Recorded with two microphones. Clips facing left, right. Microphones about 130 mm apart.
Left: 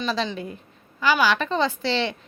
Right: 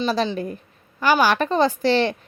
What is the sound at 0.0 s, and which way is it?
A woman's voice, 35° right (ahead or behind).